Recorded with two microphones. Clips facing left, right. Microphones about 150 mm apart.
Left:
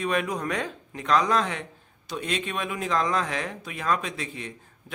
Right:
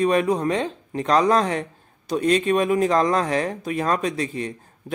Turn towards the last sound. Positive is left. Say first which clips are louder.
# right 9 dB
turn(degrees=-40)  # may be behind; listen again after turning